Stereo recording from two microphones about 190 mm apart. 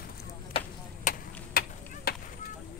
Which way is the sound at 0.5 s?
30° left (ahead or behind).